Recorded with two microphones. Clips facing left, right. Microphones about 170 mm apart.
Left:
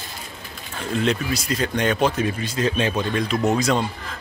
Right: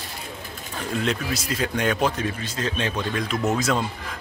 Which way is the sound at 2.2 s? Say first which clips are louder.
Left 5 dB; 10° left (ahead or behind).